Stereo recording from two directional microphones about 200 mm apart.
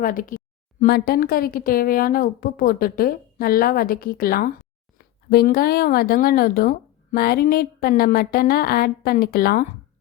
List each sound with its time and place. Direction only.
0.0 s speech: 45° left (ahead or behind)